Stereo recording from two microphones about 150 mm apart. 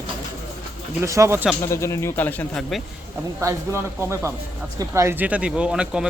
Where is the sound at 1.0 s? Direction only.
20° right (ahead or behind).